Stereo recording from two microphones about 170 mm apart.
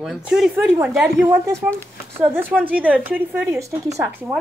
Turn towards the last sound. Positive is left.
turn(degrees=-20)  # may be behind; listen again after turning